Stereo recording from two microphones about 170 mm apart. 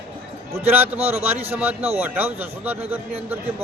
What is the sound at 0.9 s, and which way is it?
Speech, 40° right (ahead or behind).